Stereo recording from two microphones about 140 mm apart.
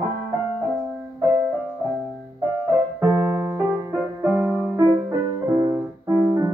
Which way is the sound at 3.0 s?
20° right (ahead or behind).